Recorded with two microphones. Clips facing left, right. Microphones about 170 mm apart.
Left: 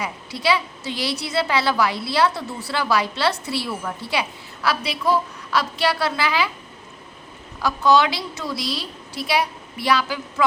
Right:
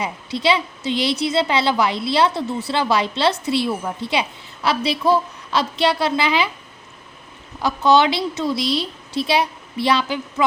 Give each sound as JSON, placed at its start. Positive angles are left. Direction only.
{"t": 0.0, "sound": "a woman's voice", "side_deg": -25}
{"t": 7.6, "sound": "a woman's voice", "side_deg": -25}